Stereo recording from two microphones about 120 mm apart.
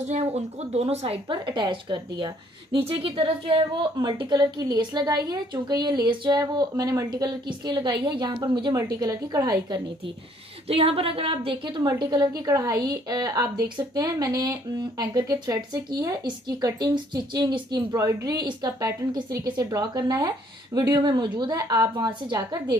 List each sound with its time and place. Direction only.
0.0 s a woman's voice: 65° right (ahead or behind); by 2.8 s 40° right (ahead or behind)
2.8 s a woman's voice: 50° right (ahead or behind); by 9.8 s 30° right (ahead or behind)
10.7 s a woman's voice: 55° right (ahead or behind); by 22.6 s 35° right (ahead or behind)